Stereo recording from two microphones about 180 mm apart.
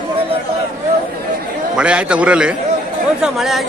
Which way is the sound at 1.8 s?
5° right (ahead or behind).